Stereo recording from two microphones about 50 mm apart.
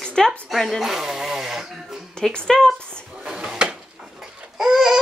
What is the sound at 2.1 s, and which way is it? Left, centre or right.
Speech, centre.